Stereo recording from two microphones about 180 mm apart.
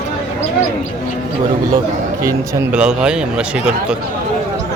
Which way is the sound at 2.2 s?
15° right (ahead or behind).